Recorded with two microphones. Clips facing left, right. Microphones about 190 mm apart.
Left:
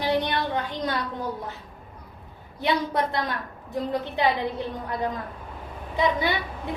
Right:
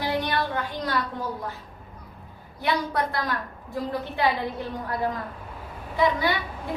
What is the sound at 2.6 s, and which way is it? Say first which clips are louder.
Speech: left 1 dB; 20° left (ahead or behind).